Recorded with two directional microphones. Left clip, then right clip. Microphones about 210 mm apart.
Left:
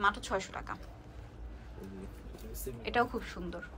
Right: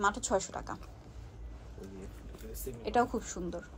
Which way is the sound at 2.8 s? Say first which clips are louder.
Right 1 dB; 20° right (ahead or behind).